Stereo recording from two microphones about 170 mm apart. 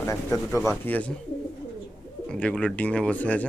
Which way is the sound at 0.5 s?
15° left (ahead or behind).